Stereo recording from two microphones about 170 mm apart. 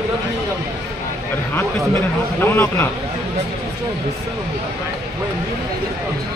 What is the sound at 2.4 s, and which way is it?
Speech, 10° left (ahead or behind).